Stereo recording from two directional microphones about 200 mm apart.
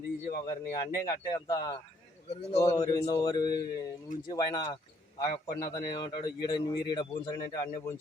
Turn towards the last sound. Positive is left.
turn(degrees=20)  # may be behind; listen again after turning